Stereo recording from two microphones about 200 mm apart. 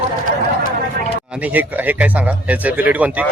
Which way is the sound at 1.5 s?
10° right (ahead or behind).